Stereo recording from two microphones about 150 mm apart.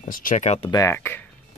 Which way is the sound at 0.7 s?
20° left (ahead or behind).